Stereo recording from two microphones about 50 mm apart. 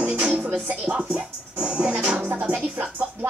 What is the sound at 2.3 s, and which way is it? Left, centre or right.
Music, right.